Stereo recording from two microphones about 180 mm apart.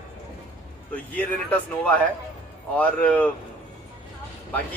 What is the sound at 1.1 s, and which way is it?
Speech, 10° left (ahead or behind).